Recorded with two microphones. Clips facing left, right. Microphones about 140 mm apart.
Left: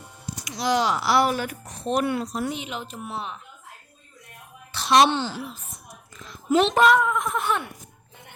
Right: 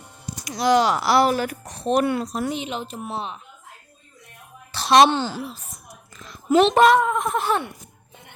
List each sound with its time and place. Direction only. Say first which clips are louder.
0.4 s speech: right 5 dB; 50° right (ahead or behind)
1.0 s a woman's voice: right 3 dB; 40° right (ahead or behind)
1.6 s speech: right 4 dB; 80° right
2.0 s speech: right 2 dB; 45° right (ahead or behind)
2.5 s speech: right 4 dB; 30° right (ahead or behind)
4.7 s a woman's voice: right 3 dB; 35° right (ahead or behind)
6.7 s a woman's voice: right 3 dB; 30° right (ahead or behind)